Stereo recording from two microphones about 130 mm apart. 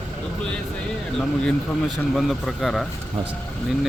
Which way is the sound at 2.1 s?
Centre (ahead or behind).